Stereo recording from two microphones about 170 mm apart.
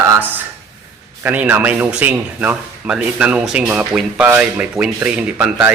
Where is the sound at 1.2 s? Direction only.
10° right (ahead or behind).